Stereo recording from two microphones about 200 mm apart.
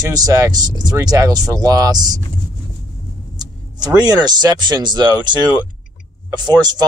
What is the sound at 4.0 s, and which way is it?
Speech, 20° right (ahead or behind).